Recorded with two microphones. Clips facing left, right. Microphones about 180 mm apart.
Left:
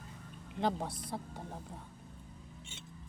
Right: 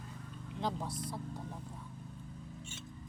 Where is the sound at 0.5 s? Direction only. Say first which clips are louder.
Left 3 dB; 60° left (ahead or behind).